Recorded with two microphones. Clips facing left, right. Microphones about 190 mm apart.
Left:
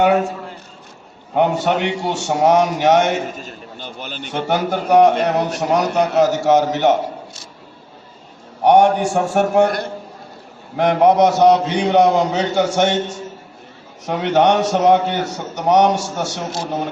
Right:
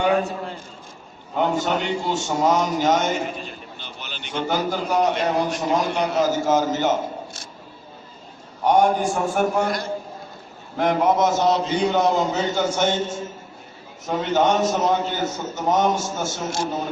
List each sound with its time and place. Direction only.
1.4 s a man's voice: 70° left (ahead or behind)
3.3 s a man's voice: 45° left (ahead or behind)
4.4 s a man's voice: 70° left (ahead or behind)
8.6 s a man's voice: 75° left (ahead or behind)
14.1 s a man's voice: 70° left (ahead or behind)